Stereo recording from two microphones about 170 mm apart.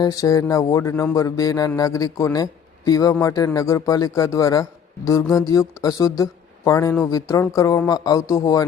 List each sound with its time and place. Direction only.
0.0 s speech: 20° left (ahead or behind)